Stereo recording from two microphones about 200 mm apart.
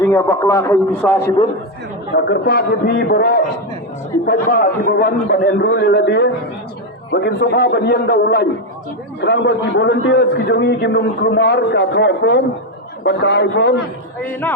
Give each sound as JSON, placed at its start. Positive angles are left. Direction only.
{"t": 0.0, "sound": "a man's voice", "side_deg": 15}
{"t": 2.1, "sound": "a man's voice", "side_deg": 60}